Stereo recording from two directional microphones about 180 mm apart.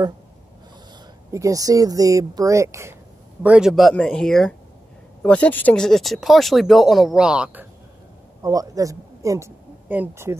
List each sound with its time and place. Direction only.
1.3 s speech: 20° right (ahead or behind)
3.4 s speech: 5° right (ahead or behind)
8.4 s speech: 20° right (ahead or behind)